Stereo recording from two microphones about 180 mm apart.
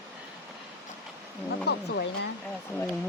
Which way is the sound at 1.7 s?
70° left (ahead or behind).